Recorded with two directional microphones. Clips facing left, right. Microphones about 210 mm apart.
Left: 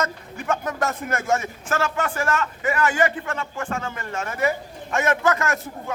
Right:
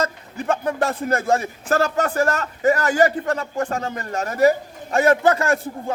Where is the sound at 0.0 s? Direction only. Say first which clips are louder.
Right 3 dB; 35° right (ahead or behind).